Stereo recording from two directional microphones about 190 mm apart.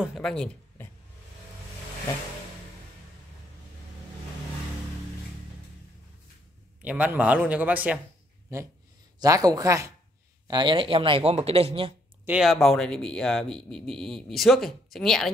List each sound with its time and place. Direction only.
0.0 s speech: centre (ahead or behind)
6.8 s a man's voice: 10° right (ahead or behind)
9.2 s a man's voice: 20° right (ahead or behind)
12.3 s speech: centre (ahead or behind)